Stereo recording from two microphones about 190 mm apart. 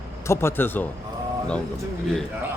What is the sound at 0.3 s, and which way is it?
Speech, 10° left (ahead or behind).